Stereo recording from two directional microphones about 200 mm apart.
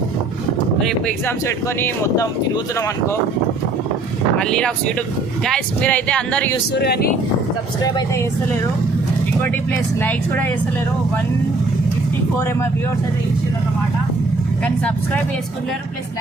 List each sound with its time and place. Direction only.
0.8 s speech: 5° left (ahead or behind)
4.4 s speech: 5° left (ahead or behind)
6.7 s speech: 50° left (ahead or behind)
7.8 s speech: 20° left (ahead or behind)
10.0 s speech: 10° left (ahead or behind)
14.6 s speech: 5° left (ahead or behind)